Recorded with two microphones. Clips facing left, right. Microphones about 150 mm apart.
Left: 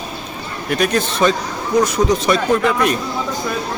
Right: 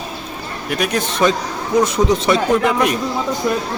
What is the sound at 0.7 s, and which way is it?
A man's voice, 10° right (ahead or behind).